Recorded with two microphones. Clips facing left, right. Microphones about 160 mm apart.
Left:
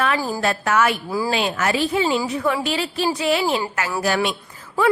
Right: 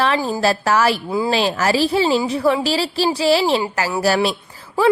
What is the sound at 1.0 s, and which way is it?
A woman's voice, 20° right (ahead or behind).